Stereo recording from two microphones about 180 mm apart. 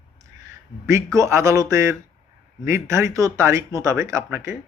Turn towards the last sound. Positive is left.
turn(degrees=-15)  # may be behind; listen again after turning